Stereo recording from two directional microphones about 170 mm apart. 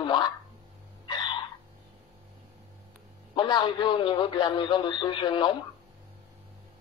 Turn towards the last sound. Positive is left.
turn(degrees=30)  # may be behind; listen again after turning